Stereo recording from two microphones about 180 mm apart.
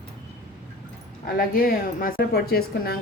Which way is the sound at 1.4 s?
55° left (ahead or behind).